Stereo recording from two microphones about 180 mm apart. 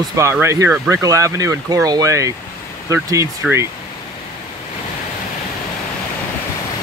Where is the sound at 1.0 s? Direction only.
20° right (ahead or behind).